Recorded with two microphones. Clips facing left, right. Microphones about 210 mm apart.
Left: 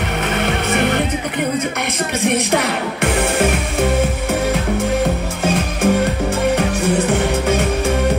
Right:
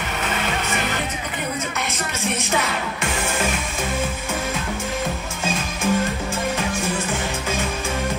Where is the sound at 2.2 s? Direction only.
65° left (ahead or behind).